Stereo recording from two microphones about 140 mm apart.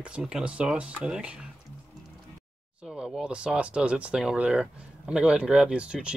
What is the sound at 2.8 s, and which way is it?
Speech, centre (ahead or behind).